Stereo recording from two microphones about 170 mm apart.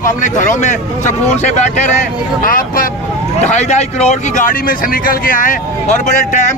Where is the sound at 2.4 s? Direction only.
55° left (ahead or behind).